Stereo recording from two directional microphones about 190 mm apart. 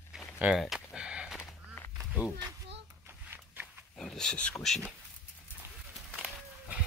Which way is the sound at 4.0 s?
5° left (ahead or behind).